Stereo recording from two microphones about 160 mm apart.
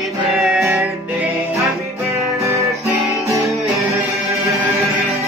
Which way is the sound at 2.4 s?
20° right (ahead or behind).